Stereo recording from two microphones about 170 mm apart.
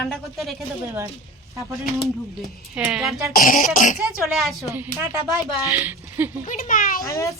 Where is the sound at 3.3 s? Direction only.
50° left (ahead or behind).